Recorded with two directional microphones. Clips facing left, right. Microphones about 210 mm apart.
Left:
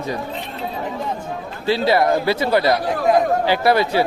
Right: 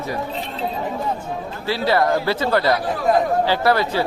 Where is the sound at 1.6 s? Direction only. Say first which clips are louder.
Left 2 dB; 15° left (ahead or behind).